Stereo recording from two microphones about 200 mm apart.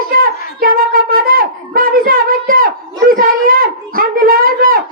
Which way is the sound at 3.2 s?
45° right (ahead or behind).